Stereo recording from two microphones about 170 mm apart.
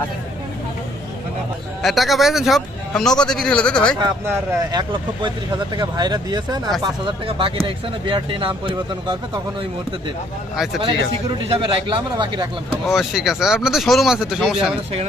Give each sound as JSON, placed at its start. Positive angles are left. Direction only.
{"t": 1.8, "sound": "speech", "side_deg": 0}
{"t": 4.7, "sound": "speech", "side_deg": -25}
{"t": 10.8, "sound": "speech", "side_deg": -30}
{"t": 12.9, "sound": "speech", "side_deg": 0}